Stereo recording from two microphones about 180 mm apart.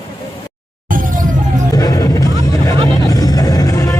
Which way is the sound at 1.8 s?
20° left (ahead or behind).